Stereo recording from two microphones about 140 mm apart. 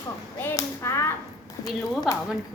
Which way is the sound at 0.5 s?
20° left (ahead or behind).